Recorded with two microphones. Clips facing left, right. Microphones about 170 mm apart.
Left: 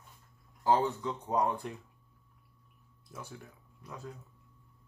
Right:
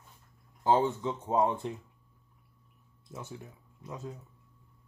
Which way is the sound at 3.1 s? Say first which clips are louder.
Right 3 dB; 20° right (ahead or behind).